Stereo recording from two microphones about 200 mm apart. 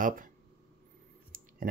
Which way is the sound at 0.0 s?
45° right (ahead or behind).